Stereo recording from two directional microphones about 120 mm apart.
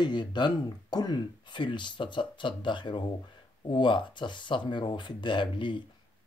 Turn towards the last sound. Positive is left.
turn(degrees=40)  # may be behind; listen again after turning